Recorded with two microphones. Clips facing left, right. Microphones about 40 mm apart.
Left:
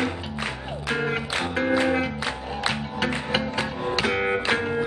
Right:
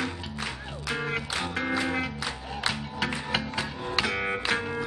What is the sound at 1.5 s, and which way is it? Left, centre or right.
Music, centre.